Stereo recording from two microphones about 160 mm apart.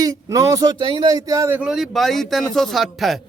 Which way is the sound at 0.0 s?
20° right (ahead or behind).